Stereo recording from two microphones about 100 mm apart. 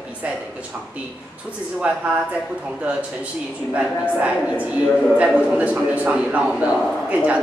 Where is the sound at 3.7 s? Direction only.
15° right (ahead or behind).